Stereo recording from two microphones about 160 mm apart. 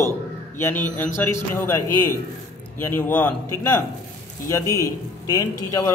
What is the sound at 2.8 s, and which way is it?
Speech, 10° left (ahead or behind).